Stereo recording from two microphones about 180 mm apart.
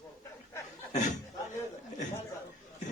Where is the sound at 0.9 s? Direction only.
40° left (ahead or behind).